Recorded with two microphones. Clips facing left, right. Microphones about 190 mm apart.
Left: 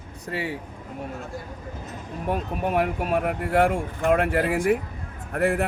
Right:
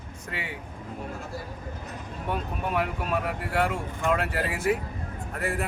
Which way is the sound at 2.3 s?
45° left (ahead or behind).